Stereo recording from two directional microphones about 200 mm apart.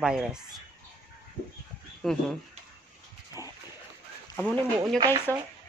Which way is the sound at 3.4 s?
15° left (ahead or behind).